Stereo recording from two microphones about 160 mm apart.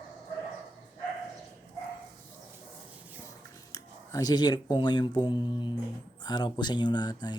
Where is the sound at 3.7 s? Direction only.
20° left (ahead or behind).